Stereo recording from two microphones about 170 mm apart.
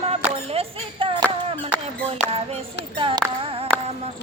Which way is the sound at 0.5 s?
30° right (ahead or behind).